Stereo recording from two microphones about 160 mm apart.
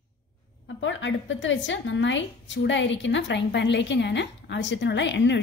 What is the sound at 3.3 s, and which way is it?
A woman's voice, 90° left.